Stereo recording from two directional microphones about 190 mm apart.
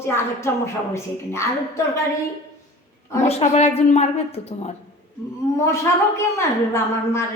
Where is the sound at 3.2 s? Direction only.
35° left (ahead or behind).